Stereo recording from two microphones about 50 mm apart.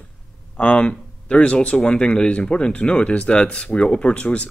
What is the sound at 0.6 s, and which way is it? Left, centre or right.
Speech, left.